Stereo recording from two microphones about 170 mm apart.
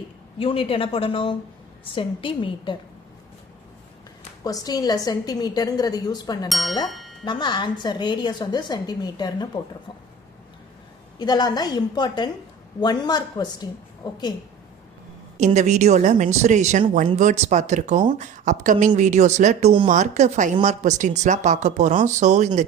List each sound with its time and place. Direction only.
0.3 s a woman's voice: 30° left (ahead or behind)
4.4 s a woman's voice: 20° left (ahead or behind)
6.5 s speech: centre (ahead or behind)
6.8 s music: centre (ahead or behind)
7.3 s a woman's voice: 25° left (ahead or behind)
11.2 s a woman's voice: 25° left (ahead or behind)
15.4 s a woman's voice: 40° right (ahead or behind)